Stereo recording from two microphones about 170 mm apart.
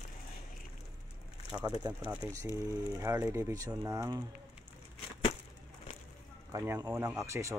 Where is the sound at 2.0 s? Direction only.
15° right (ahead or behind).